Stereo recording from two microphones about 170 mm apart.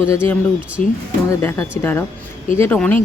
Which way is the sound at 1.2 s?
15° left (ahead or behind).